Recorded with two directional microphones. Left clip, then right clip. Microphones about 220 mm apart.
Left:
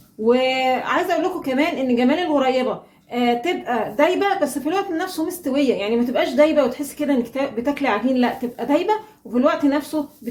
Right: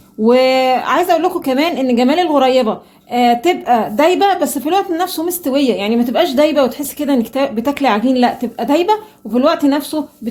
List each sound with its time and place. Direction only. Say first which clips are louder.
0.3 s speech: right 6 dB; 45° right (ahead or behind)